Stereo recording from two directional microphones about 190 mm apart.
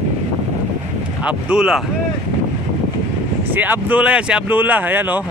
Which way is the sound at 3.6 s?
10° right (ahead or behind).